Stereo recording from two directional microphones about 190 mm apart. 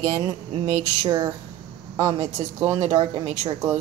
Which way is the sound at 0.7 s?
20° right (ahead or behind).